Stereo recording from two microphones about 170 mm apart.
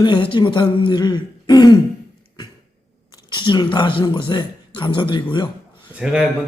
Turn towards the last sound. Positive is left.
turn(degrees=-5)  # may be behind; listen again after turning